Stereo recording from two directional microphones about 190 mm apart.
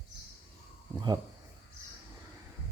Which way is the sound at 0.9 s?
20° right (ahead or behind).